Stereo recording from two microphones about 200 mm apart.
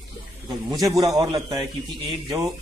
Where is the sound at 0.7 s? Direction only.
20° right (ahead or behind).